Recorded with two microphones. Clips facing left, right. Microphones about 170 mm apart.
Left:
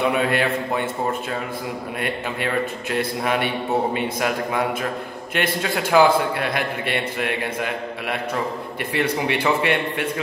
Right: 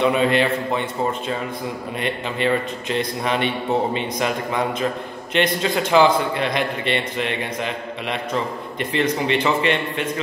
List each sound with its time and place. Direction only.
0.0 s a man's voice: 10° left (ahead or behind)
2.0 s a man's voice: 10° left (ahead or behind)